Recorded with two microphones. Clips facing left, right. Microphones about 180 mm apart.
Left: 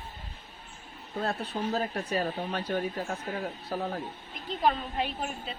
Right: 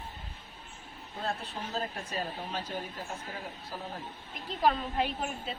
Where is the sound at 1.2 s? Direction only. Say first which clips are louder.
Left 5 dB; 65° left (ahead or behind).